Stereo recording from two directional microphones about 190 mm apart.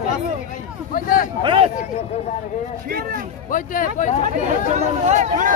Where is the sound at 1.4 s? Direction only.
25° right (ahead or behind).